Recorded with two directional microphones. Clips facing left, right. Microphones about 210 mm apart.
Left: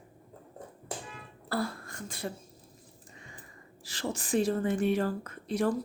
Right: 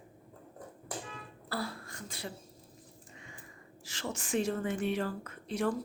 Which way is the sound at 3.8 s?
35° left (ahead or behind).